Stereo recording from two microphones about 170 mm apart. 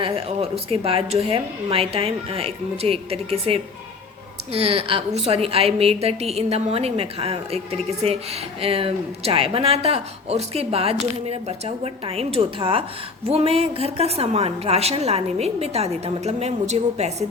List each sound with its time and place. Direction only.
0.0 s a woman's voice: 35° right (ahead or behind)